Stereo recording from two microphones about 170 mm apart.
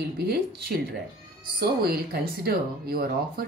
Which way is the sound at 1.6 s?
65° right (ahead or behind).